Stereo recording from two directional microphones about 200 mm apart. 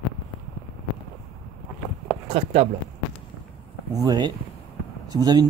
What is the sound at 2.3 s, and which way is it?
Speech, 30° right (ahead or behind).